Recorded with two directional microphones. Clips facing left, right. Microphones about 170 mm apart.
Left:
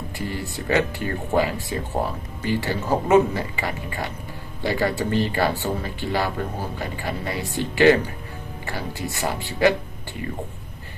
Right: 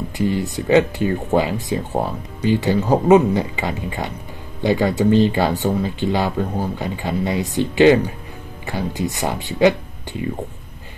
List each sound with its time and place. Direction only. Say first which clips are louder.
0.2 s speech: right 10 dB; 20° right (ahead or behind)